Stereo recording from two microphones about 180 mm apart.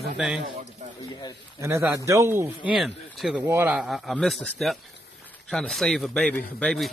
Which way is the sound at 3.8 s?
Centre (ahead or behind).